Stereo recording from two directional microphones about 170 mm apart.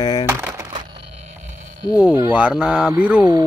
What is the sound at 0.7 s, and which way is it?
Music, 30° right (ahead or behind).